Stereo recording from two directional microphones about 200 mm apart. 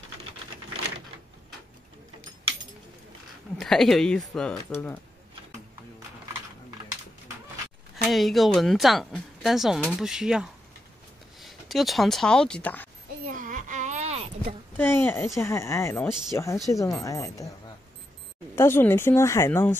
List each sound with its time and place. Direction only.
3.5 s speech: centre (ahead or behind)
7.9 s speech: centre (ahead or behind)
13.3 s baby cry: 40° right (ahead or behind)
14.8 s speech: 10° left (ahead or behind)
18.6 s speech: 10° left (ahead or behind)